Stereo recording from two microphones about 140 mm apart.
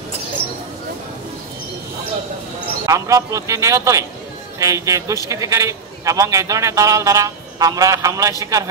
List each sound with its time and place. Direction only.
2.9 s a man's voice: 25° right (ahead or behind)